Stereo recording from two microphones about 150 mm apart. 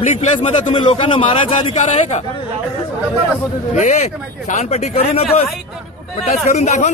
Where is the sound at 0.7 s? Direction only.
35° left (ahead or behind); by 2.2 s 50° left (ahead or behind).